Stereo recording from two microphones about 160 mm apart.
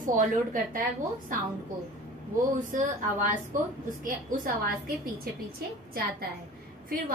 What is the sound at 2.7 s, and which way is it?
Speech, 55° right (ahead or behind).